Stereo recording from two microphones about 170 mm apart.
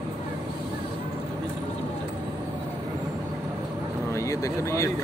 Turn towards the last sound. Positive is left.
turn(degrees=15)  # may be behind; listen again after turning